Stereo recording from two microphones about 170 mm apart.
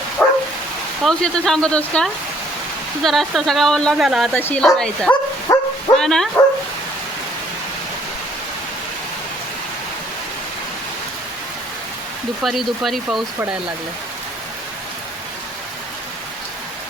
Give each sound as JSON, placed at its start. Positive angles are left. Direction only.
{"t": 0.2, "sound": "dog", "side_deg": 10}
{"t": 1.0, "sound": "speech", "side_deg": 5}
{"t": 4.4, "sound": "speech", "side_deg": 10}
{"t": 5.5, "sound": "speech", "side_deg": 20}
{"t": 6.0, "sound": "speech", "side_deg": 5}
{"t": 12.4, "sound": "speech", "side_deg": 0}